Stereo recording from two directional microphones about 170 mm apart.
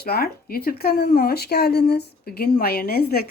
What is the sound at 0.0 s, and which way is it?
Speech, 60° left (ahead or behind).